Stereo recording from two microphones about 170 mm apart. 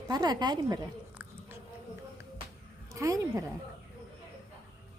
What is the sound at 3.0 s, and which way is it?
Speech, 20° right (ahead or behind).